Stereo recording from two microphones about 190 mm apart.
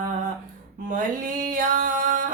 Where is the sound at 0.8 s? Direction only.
45° right (ahead or behind).